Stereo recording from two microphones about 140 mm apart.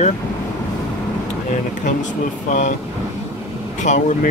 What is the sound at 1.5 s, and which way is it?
Speech, 65° left (ahead or behind).